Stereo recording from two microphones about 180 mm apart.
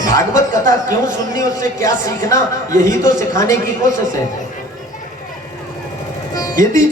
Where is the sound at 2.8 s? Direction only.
45° right (ahead or behind).